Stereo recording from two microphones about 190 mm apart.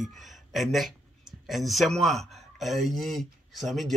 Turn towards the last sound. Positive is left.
turn(degrees=0)  # may be behind; listen again after turning